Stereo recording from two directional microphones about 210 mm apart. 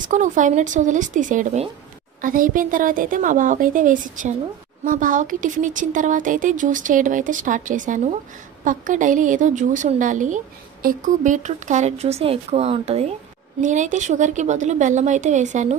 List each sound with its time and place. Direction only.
0.0 s a woman's voice: 35° right (ahead or behind)